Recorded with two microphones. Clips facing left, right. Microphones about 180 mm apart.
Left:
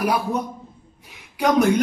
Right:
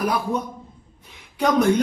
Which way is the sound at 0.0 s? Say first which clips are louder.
Left 1 dB; 10° left (ahead or behind).